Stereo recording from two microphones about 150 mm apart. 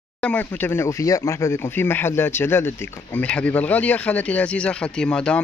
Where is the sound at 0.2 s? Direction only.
10° left (ahead or behind).